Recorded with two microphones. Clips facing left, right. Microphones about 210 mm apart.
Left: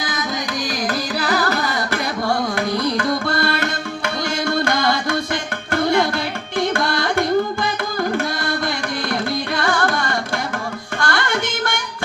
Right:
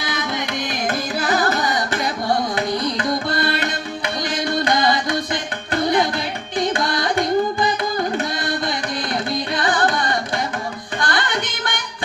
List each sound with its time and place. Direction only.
0.0 s carnatic music: 30° right (ahead or behind)
3.4 s music: 20° right (ahead or behind)
6.6 s carnatic music: 15° right (ahead or behind)
11.0 s music: 20° right (ahead or behind)